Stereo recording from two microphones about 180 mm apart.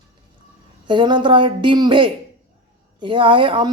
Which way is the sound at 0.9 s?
25° right (ahead or behind).